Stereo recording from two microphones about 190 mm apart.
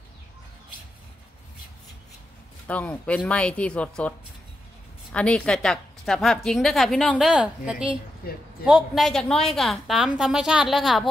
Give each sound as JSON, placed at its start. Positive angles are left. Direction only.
{"t": 2.6, "sound": "speech", "side_deg": 10}
{"t": 5.1, "sound": "a woman's voice", "side_deg": 5}
{"t": 8.2, "sound": "a woman's voice", "side_deg": 55}
{"t": 8.6, "sound": "a woman's voice", "side_deg": 0}